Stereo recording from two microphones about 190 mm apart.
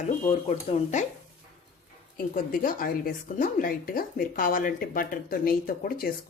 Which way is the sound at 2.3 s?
45° left (ahead or behind).